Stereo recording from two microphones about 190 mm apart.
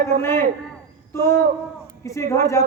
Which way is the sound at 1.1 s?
15° left (ahead or behind).